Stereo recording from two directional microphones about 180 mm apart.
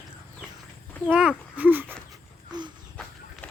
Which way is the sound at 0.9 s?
Centre (ahead or behind).